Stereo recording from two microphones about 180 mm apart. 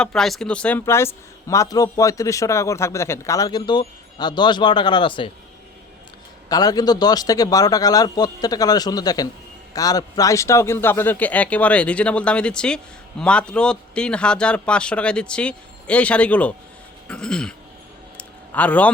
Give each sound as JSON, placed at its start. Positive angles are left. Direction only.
{"t": 0.0, "sound": "a man's voice", "side_deg": 5}
{"t": 6.5, "sound": "a man's voice", "side_deg": 20}
{"t": 17.1, "sound": "throat clearing", "side_deg": 5}
{"t": 18.2, "sound": "a sound", "side_deg": 10}